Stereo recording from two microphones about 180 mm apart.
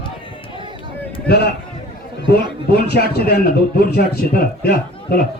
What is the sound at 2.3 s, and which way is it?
A man's voice, 60° left (ahead or behind).